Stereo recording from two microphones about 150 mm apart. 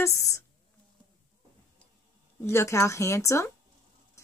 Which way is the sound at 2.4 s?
20° left (ahead or behind).